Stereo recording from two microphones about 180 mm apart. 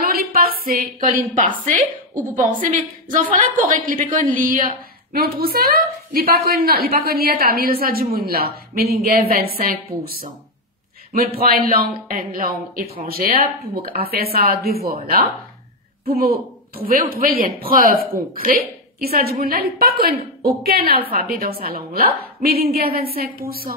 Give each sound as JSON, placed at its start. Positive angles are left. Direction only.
{"t": 0.0, "sound": "a sound", "side_deg": -55}
{"t": 2.3, "sound": "a woman's voice", "side_deg": -45}
{"t": 11.1, "sound": "a woman's voice", "side_deg": -55}
{"t": 18.9, "sound": "a woman's voice", "side_deg": -55}